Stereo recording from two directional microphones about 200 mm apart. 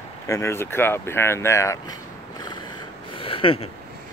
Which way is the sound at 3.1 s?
25° left (ahead or behind).